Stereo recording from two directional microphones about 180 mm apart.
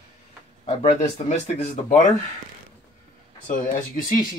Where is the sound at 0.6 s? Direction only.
35° left (ahead or behind).